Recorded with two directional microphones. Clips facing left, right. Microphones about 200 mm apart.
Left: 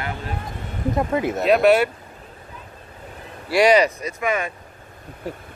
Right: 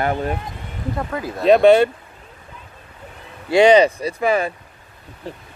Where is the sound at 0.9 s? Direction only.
20° left (ahead or behind).